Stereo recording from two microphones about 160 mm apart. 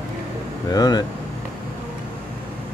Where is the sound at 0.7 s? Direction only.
25° left (ahead or behind).